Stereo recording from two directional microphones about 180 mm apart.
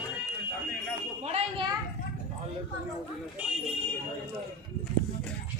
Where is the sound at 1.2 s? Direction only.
30° right (ahead or behind).